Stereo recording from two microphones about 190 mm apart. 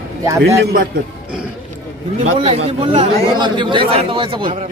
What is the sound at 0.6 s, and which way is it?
Speech, 50° right (ahead or behind).